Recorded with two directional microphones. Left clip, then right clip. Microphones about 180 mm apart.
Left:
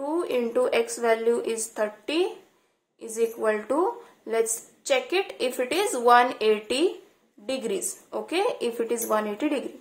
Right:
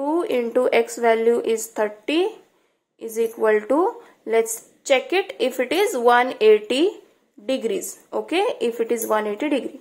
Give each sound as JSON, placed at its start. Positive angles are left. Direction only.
{"t": 0.0, "sound": "a woman's voice", "side_deg": -30}